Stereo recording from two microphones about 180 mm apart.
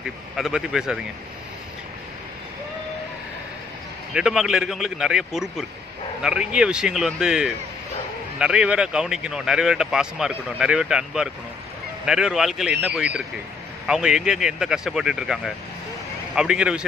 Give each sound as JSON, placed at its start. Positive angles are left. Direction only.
{"t": 0.0, "sound": "speech", "side_deg": -5}
{"t": 4.1, "sound": "speech", "side_deg": -5}